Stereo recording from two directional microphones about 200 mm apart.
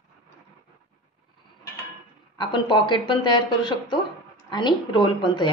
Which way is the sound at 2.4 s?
20° left (ahead or behind).